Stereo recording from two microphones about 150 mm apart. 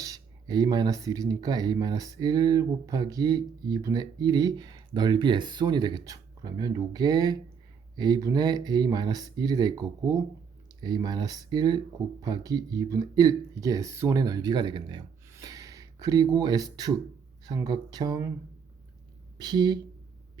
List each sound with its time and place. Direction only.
0.0 s speech: 25° right (ahead or behind)
19.4 s speech: 30° right (ahead or behind)